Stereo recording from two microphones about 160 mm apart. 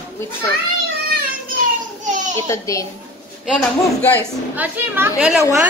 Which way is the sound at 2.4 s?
20° left (ahead or behind).